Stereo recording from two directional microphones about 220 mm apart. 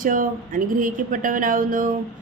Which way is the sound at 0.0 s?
40° right (ahead or behind).